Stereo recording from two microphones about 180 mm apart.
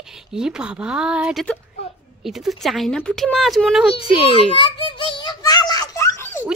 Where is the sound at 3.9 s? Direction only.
30° left (ahead or behind); by 6.4 s 15° left (ahead or behind).